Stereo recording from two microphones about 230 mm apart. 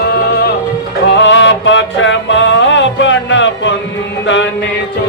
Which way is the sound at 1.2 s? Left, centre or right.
Left.